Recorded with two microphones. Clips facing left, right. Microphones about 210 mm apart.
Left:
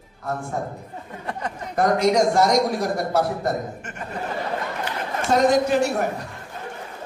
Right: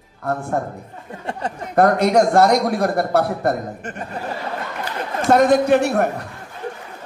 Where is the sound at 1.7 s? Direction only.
60° right (ahead or behind).